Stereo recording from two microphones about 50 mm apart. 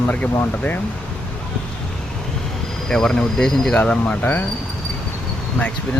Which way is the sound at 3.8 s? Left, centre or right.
Left.